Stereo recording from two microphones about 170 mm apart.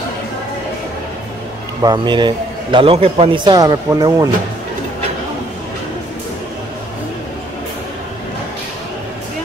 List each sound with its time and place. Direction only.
1.8 s a man's voice: 25° right (ahead or behind)